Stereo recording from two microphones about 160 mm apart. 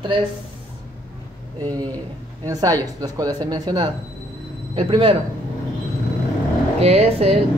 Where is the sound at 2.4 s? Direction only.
25° right (ahead or behind).